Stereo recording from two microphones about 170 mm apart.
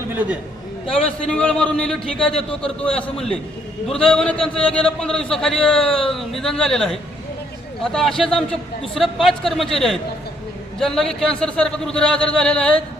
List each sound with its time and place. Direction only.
0.1 s a man's voice: 10° right (ahead or behind)
0.9 s a man's voice: 5° left (ahead or behind)